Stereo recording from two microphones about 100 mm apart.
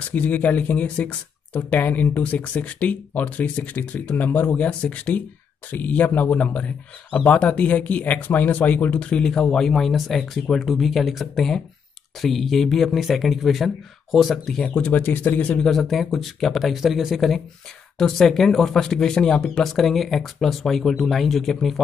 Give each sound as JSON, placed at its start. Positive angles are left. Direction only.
{"t": 0.1, "sound": "speech", "side_deg": 15}
{"t": 14.9, "sound": "speech", "side_deg": 20}
{"t": 15.7, "sound": "speech", "side_deg": 0}